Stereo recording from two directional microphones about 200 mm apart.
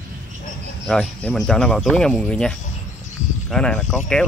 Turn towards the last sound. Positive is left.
turn(degrees=0)  # may be behind; listen again after turning